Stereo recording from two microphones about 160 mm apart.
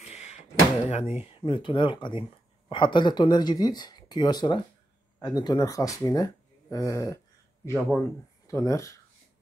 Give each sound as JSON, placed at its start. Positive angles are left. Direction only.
{"t": 0.0, "sound": "door", "side_deg": 45}
{"t": 1.3, "sound": "speech", "side_deg": 35}
{"t": 8.5, "sound": "speech", "side_deg": 20}